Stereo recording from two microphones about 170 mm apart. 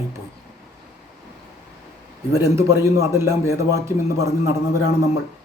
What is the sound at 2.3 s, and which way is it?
A man's voice, 15° right (ahead or behind).